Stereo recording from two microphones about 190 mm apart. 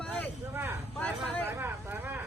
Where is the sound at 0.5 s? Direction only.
15° right (ahead or behind).